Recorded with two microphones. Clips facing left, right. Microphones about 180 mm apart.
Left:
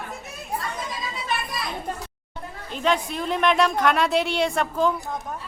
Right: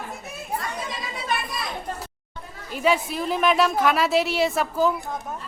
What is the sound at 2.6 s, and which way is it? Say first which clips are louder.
Speech: right 2 dB; 5° right (ahead or behind).